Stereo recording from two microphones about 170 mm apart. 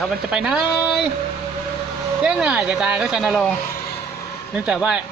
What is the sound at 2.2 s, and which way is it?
Speech, 5° right (ahead or behind).